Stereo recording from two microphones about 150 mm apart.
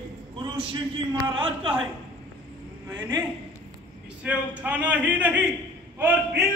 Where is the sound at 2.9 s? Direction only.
25° right (ahead or behind).